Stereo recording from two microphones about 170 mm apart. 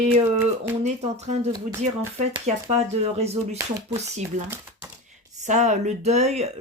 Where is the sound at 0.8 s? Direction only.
40° right (ahead or behind).